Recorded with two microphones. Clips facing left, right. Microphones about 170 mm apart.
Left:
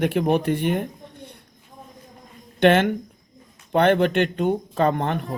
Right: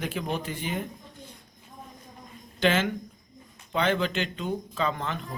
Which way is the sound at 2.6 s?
60° left (ahead or behind).